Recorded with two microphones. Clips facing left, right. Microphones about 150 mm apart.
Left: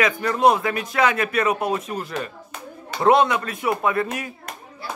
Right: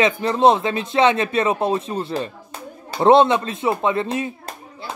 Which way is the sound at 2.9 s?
30° right (ahead or behind).